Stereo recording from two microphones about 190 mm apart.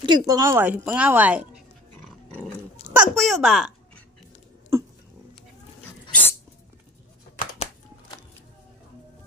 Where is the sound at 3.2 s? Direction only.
Centre (ahead or behind).